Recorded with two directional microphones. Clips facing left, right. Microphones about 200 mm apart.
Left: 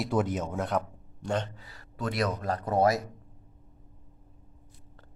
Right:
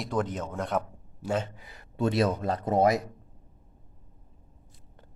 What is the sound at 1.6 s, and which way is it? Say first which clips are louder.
A man's voice: right 6 dB; 20° right (ahead or behind).